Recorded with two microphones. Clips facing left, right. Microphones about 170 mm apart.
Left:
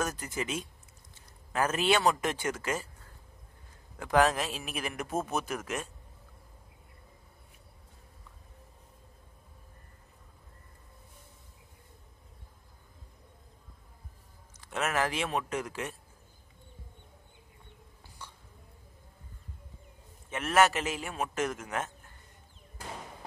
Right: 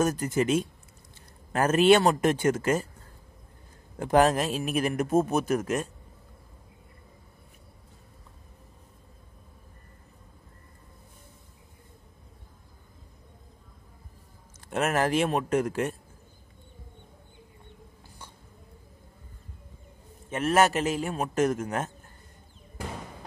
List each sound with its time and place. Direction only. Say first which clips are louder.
0.2 s a man's voice: right 10 dB; 45° right (ahead or behind)
4.0 s a man's voice: right 4 dB; 45° right (ahead or behind)
14.7 s a man's voice: right 6 dB; 50° right (ahead or behind)
20.2 s a man's voice: right 3 dB; 40° right (ahead or behind)